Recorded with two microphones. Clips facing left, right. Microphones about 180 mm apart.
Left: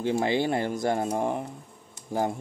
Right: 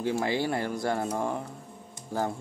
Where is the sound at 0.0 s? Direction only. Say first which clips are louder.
Left 3 dB; 20° left (ahead or behind).